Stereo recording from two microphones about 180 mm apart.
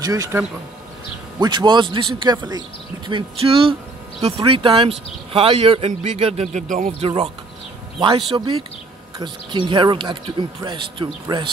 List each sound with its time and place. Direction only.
0.0 s speech: 20° right (ahead or behind)
1.4 s speech: 25° right (ahead or behind); by 6.9 s 45° right (ahead or behind)
7.0 s speech: 30° right (ahead or behind)
8.3 s speech: 20° right (ahead or behind)